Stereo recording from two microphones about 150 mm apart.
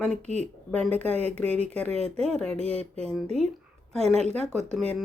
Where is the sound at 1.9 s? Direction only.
45° right (ahead or behind).